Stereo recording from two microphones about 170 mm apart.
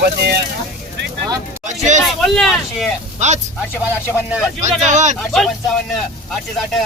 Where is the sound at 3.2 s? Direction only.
45° right (ahead or behind).